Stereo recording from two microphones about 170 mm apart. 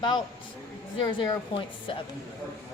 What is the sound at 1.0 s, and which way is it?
Speech, 30° left (ahead or behind).